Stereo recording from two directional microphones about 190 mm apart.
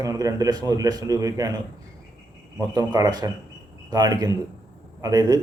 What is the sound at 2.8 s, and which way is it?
A man's voice, 20° right (ahead or behind).